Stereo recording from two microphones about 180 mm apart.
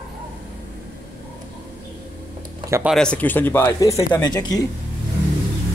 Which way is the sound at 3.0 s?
5° left (ahead or behind).